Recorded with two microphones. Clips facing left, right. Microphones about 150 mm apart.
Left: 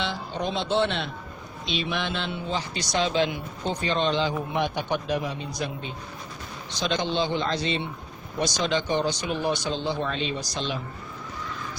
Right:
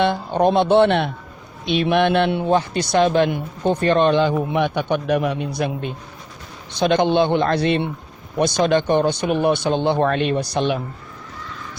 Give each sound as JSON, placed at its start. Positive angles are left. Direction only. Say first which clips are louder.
{"t": 0.0, "sound": "a man's voice", "louder": "right 12 dB", "side_deg": -55}